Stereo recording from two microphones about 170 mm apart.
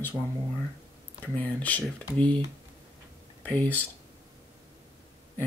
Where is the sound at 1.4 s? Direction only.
10° left (ahead or behind).